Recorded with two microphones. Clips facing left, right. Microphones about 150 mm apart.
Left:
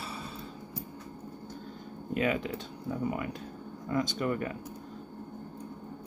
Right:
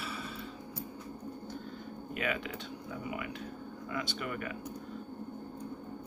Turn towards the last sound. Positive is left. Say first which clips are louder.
# left 7 dB
turn(degrees=35)  # may be behind; listen again after turning